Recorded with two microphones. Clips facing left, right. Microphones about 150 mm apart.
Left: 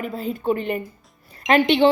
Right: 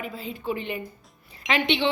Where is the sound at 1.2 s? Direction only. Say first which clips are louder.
Left 7 dB; 45° left (ahead or behind).